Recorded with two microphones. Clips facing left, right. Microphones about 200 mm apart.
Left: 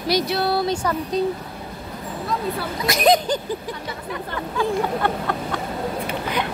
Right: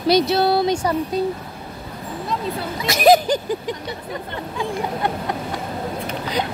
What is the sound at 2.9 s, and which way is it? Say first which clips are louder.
Speech: right 4 dB; 5° right (ahead or behind).